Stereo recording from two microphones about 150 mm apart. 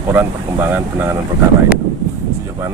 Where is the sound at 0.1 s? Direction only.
15° right (ahead or behind).